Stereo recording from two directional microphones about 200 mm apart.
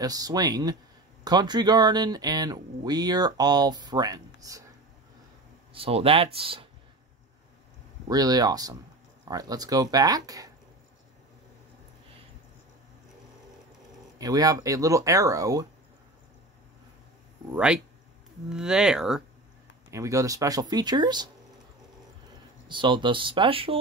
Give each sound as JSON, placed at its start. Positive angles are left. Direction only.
{"t": 0.0, "sound": "speech", "side_deg": -20}
{"t": 5.7, "sound": "speech", "side_deg": -30}
{"t": 8.1, "sound": "speech", "side_deg": -20}
{"t": 14.1, "sound": "speech", "side_deg": -20}
{"t": 17.5, "sound": "speech", "side_deg": -5}
{"t": 19.9, "sound": "speech", "side_deg": -15}
{"t": 22.7, "sound": "speech", "side_deg": -25}